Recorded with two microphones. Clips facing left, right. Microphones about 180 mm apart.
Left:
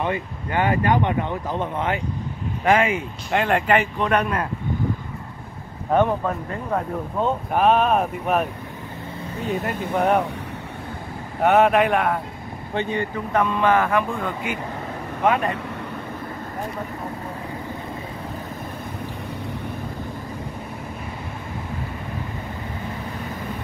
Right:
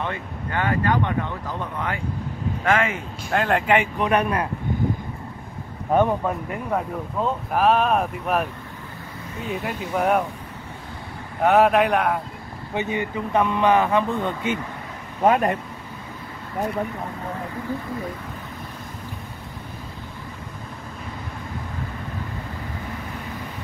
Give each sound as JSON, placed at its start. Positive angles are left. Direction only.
{"t": 0.0, "sound": "speech", "side_deg": 15}
{"t": 3.3, "sound": "speech", "side_deg": 0}
{"t": 5.9, "sound": "speech", "side_deg": -10}
{"t": 9.5, "sound": "speech", "side_deg": 0}
{"t": 11.4, "sound": "speech", "side_deg": 0}
{"t": 12.7, "sound": "speech", "side_deg": -15}